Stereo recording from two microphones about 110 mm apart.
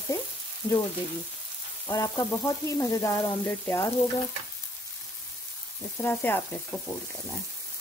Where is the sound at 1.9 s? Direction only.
25° left (ahead or behind).